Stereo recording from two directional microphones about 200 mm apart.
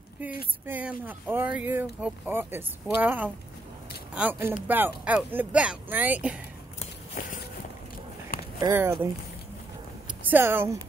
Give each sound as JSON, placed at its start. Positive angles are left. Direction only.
{"t": 0.7, "sound": "speech", "side_deg": -10}
{"t": 6.8, "sound": "a sound", "side_deg": 40}
{"t": 8.5, "sound": "speech", "side_deg": -15}
{"t": 10.0, "sound": "speech", "side_deg": -10}